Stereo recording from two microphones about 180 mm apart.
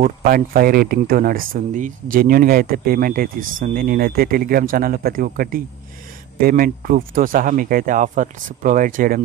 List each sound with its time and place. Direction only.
0.0 s speech: 55° right (ahead or behind)